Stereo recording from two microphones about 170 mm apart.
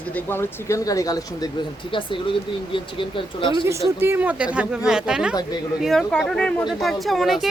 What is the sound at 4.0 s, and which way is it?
Speech, 10° right (ahead or behind).